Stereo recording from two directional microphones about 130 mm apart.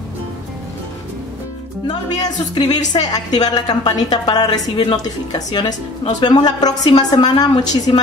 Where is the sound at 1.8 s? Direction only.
35° left (ahead or behind).